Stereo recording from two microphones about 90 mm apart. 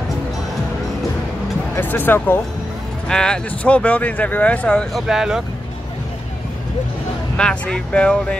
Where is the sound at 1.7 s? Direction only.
20° left (ahead or behind).